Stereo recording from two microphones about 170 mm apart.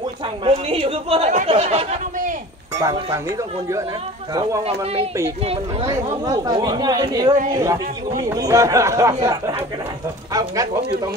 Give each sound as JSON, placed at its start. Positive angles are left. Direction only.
{"t": 0.5, "sound": "speech", "side_deg": -35}
{"t": 2.8, "sound": "speech", "side_deg": -20}
{"t": 4.3, "sound": "speech", "side_deg": -25}
{"t": 5.9, "sound": "speech", "side_deg": -20}